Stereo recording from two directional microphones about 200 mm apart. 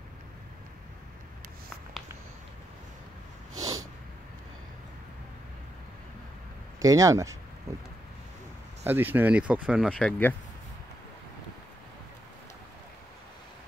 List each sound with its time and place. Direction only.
3.5 s snort: 20° right (ahead or behind)
6.8 s speech: 15° right (ahead or behind)
8.8 s speech: 10° right (ahead or behind)
9.9 s speech: 5° left (ahead or behind)